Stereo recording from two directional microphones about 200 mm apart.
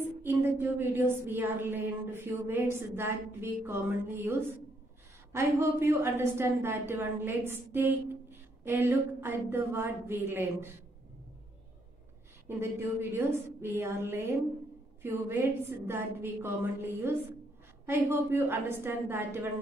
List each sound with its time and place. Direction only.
0.2 s a woman's voice: 10° right (ahead or behind)
12.5 s a woman's voice: 10° right (ahead or behind)